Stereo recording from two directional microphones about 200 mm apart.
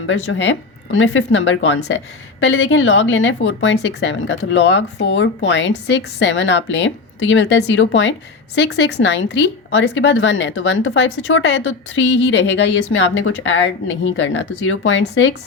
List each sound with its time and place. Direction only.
0.1 s speech: 75° left (ahead or behind)